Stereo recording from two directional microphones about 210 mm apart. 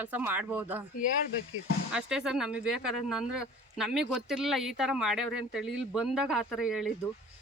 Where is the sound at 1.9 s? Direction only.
5° right (ahead or behind).